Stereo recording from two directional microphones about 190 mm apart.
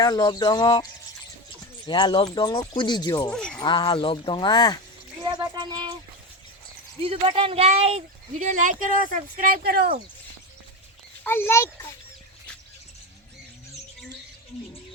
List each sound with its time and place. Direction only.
0.0 s speech: 25° left (ahead or behind)
1.9 s speech: 25° left (ahead or behind)
3.2 s speech: 5° left (ahead or behind)
3.6 s speech: 25° left (ahead or behind)
5.2 s a sound: 20° right (ahead or behind)
7.0 s speech: 30° right (ahead or behind); by 10.0 s 50° right (ahead or behind)
11.2 s speech: 10° left (ahead or behind)